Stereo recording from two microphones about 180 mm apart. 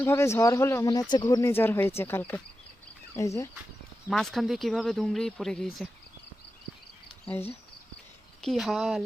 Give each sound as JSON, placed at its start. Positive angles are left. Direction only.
{"t": 0.0, "sound": "speech", "side_deg": 15}
{"t": 4.1, "sound": "speech", "side_deg": 0}
{"t": 8.4, "sound": "speech", "side_deg": 0}